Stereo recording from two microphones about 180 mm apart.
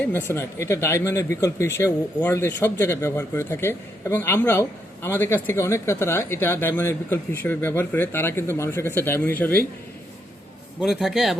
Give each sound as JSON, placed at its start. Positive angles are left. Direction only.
{"t": 0.0, "sound": "speech", "side_deg": 10}
{"t": 10.8, "sound": "a man's voice", "side_deg": 0}